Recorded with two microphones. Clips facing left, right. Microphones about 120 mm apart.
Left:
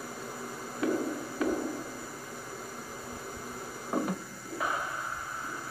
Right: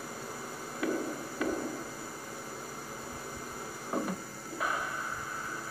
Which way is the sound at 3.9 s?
10° left (ahead or behind).